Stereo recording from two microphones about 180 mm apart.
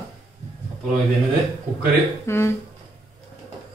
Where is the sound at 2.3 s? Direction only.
15° left (ahead or behind).